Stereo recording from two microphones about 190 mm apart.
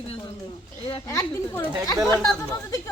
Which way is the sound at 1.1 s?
15° left (ahead or behind).